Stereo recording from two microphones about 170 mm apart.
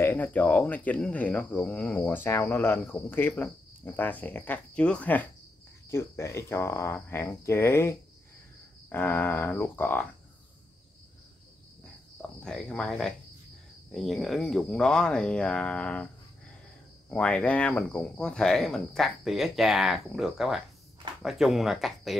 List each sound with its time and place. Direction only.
0.0 s speech: 10° left (ahead or behind)
11.8 s cricket: 5° left (ahead or behind)
13.9 s speech: centre (ahead or behind)
17.1 s speech: 5° left (ahead or behind)